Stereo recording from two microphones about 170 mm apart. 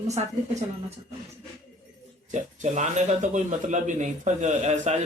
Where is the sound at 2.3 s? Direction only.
45° right (ahead or behind).